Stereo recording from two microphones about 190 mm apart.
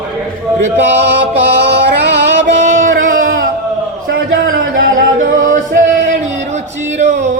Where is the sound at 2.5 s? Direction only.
40° right (ahead or behind).